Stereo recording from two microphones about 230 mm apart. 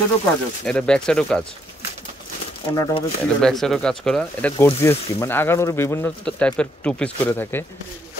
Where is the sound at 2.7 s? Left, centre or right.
Centre.